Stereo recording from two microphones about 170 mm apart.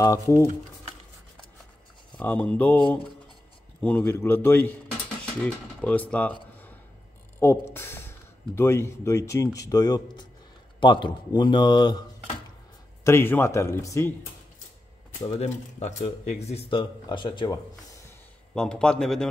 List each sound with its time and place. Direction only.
0.0 s speech: 20° left (ahead or behind)
2.1 s speech: 10° left (ahead or behind)
5.8 s speech: 5° left (ahead or behind)
7.4 s speech: 15° left (ahead or behind)
7.7 s a sound: 15° left (ahead or behind)
8.5 s speech: 15° left (ahead or behind)
13.0 s speech: 15° left (ahead or behind)
15.2 s speech: 40° left (ahead or behind)
18.5 s a man's voice: 5° left (ahead or behind)